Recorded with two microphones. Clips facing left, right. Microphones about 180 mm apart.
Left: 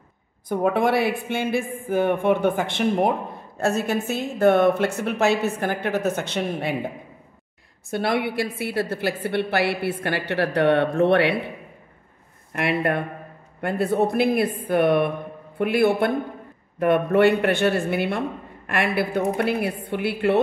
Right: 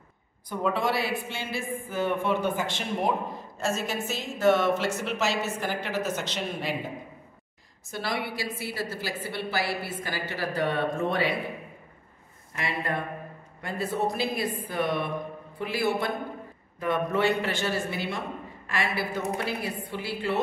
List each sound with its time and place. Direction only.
0.5 s speech: 55° left (ahead or behind)
7.9 s speech: 60° left (ahead or behind)
12.5 s speech: 65° left (ahead or behind)